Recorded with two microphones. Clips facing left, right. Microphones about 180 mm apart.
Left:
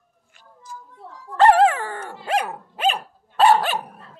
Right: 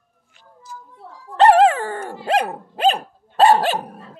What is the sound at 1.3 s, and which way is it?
Dog, 25° right (ahead or behind).